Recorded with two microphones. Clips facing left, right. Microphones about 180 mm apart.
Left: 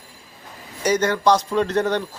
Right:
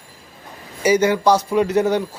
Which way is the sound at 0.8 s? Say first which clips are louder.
Right 3 dB; 10° right (ahead or behind).